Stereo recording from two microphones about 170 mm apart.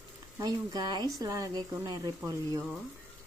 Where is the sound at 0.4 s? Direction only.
25° right (ahead or behind).